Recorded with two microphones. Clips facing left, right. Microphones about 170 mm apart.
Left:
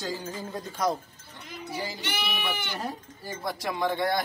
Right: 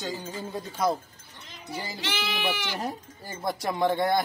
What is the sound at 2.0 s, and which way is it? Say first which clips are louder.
Speech: right 1 dB; 90° right.